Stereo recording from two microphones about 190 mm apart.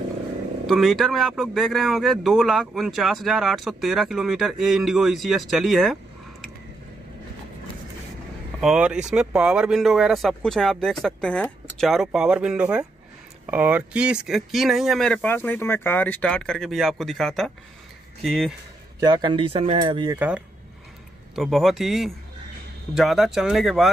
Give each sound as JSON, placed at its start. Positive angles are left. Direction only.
{"t": 0.7, "sound": "speech", "side_deg": 0}
{"t": 8.5, "sound": "speech", "side_deg": -5}
{"t": 18.9, "sound": "speech", "side_deg": -20}
{"t": 20.2, "sound": "speech", "side_deg": -5}